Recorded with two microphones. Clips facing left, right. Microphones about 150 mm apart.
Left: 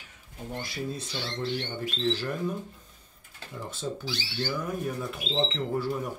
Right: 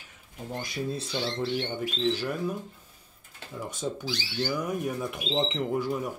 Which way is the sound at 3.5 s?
10° right (ahead or behind).